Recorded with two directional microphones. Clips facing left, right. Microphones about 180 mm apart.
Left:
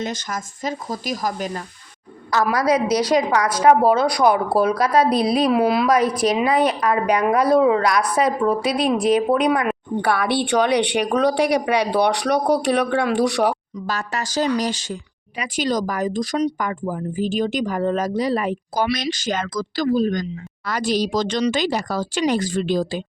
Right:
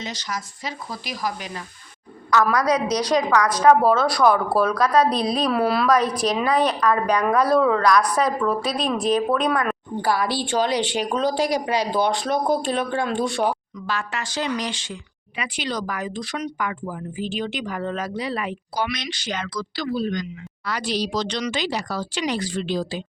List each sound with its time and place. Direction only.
0.0 s speech: 50° left (ahead or behind)
2.3 s speech: 25° left (ahead or behind)
5.0 s a woman's voice: 5° left (ahead or behind)
6.0 s a woman's voice: 5° left (ahead or behind)
6.7 s a woman's voice: 20° left (ahead or behind)
10.0 s speech: 65° left (ahead or behind)
13.7 s speech: 40° left (ahead or behind)